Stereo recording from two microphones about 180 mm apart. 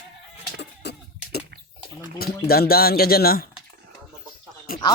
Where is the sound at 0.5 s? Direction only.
70° left (ahead or behind).